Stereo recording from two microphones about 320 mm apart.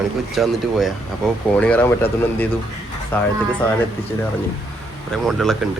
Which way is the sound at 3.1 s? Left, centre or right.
Centre.